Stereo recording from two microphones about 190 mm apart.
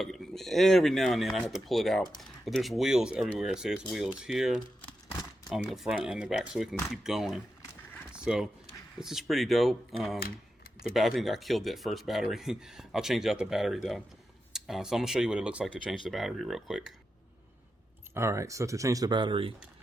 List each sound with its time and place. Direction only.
0.0 s speech: centre (ahead or behind)
5.6 s speech: centre (ahead or behind)
8.1 s a sound: 5° right (ahead or behind)
9.0 s speech: centre (ahead or behind)
18.1 s speech: 15° right (ahead or behind)